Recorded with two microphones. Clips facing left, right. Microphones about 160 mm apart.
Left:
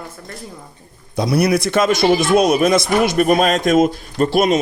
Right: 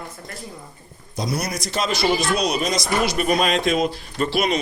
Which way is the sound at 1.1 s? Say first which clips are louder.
Left 10 dB; 65° left (ahead or behind).